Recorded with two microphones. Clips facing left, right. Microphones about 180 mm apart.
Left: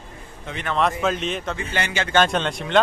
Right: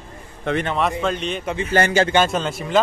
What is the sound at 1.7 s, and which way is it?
Speech, 40° right (ahead or behind).